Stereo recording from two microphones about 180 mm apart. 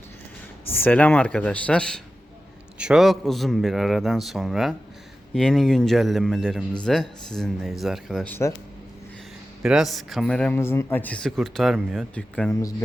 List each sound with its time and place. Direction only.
0.7 s a man's voice: 10° left (ahead or behind)
9.6 s a man's voice: centre (ahead or behind)
12.5 s speech: 20° left (ahead or behind)